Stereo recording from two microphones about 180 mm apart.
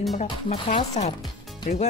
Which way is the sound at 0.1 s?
40° left (ahead or behind).